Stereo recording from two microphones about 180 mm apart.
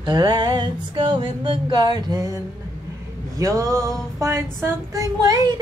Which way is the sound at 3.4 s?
20° right (ahead or behind).